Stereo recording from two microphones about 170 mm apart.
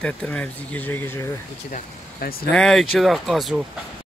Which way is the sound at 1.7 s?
60° left (ahead or behind).